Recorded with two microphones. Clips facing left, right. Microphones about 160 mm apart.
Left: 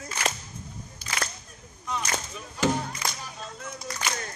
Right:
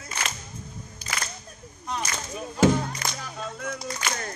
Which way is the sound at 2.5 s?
45° right (ahead or behind).